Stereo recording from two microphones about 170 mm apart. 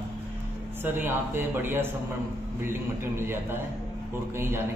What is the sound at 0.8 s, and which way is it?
A man's voice, 10° right (ahead or behind).